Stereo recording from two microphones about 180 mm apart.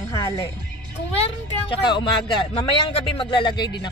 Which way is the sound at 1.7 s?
25° left (ahead or behind).